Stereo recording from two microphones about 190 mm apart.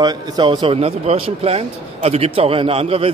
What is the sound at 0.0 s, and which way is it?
A man's voice, 25° right (ahead or behind).